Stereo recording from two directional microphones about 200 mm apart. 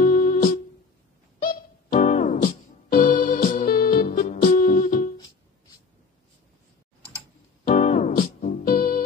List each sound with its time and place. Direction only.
0.0 s music: 40° left (ahead or behind)
1.9 s music: 35° left (ahead or behind)
7.6 s music: 40° left (ahead or behind)